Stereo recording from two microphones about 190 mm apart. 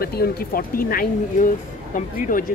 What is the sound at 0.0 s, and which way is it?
Speech, 55° left (ahead or behind).